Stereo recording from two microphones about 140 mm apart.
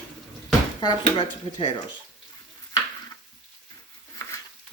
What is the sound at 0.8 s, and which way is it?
Speech, 35° left (ahead or behind).